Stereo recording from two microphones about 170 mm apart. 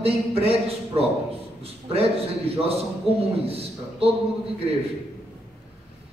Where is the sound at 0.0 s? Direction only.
35° right (ahead or behind).